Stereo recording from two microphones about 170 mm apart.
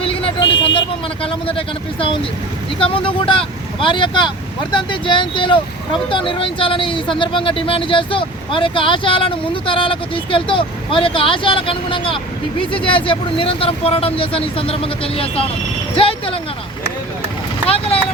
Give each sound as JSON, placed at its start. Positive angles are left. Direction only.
{"t": 0.0, "sound": "speech", "side_deg": 30}
{"t": 17.7, "sound": "vehicle", "side_deg": 35}